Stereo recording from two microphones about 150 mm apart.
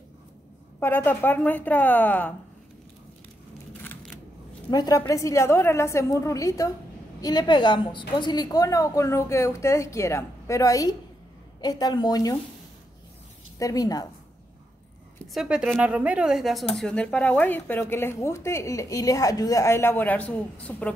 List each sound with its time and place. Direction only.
0.7 s speech: 15° left (ahead or behind)
4.6 s a woman's voice: 25° left (ahead or behind)
13.6 s a woman's voice: 25° left (ahead or behind)
15.3 s a woman's voice: 5° right (ahead or behind)